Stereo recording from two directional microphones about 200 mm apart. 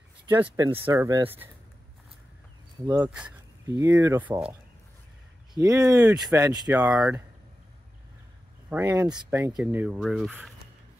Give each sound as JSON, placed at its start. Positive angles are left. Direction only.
{"t": 0.4, "sound": "speech", "side_deg": -10}
{"t": 2.9, "sound": "speech", "side_deg": -5}
{"t": 5.6, "sound": "speech", "side_deg": -20}
{"t": 6.0, "sound": "speech", "side_deg": 0}
{"t": 6.3, "sound": "speech", "side_deg": -20}
{"t": 6.8, "sound": "speech", "side_deg": -5}
{"t": 8.6, "sound": "speech", "side_deg": -10}